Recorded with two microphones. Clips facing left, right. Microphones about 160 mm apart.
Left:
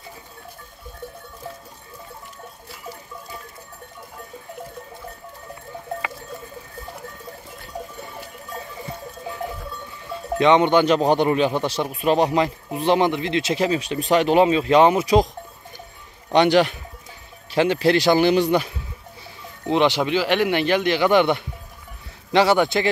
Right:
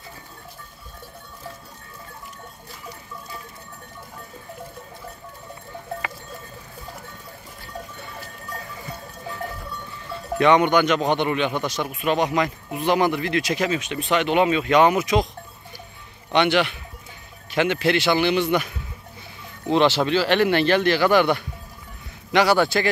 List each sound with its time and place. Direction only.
8.5 s sheep: 25° left (ahead or behind)
10.0 s speech: 20° left (ahead or behind)
16.3 s speech: 40° left (ahead or behind)
19.7 s a man's voice: 15° left (ahead or behind)